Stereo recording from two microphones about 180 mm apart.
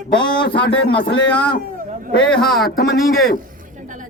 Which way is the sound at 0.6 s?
85° left.